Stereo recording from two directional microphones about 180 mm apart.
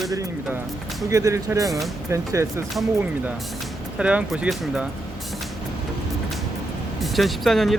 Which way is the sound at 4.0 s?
5° right (ahead or behind).